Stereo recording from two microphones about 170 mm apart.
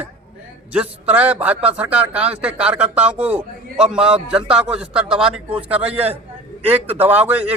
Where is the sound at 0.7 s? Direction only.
10° right (ahead or behind).